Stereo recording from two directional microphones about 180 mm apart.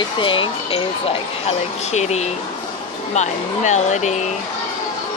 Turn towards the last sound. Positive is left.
turn(degrees=40)  # may be behind; listen again after turning